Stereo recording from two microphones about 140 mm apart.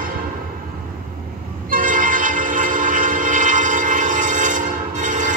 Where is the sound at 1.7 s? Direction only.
70° right (ahead or behind).